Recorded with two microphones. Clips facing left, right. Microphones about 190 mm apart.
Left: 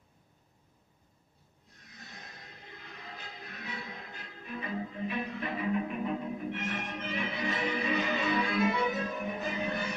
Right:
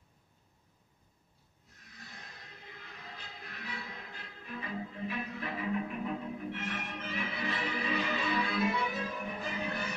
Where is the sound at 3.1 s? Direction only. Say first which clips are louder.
Left 3 dB; 20° left (ahead or behind).